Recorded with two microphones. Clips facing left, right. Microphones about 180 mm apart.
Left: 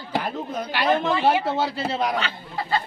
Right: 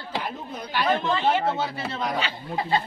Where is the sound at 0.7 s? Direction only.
75° left (ahead or behind).